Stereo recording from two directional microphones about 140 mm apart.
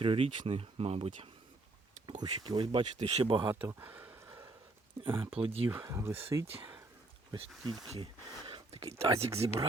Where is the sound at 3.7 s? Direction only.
15° right (ahead or behind).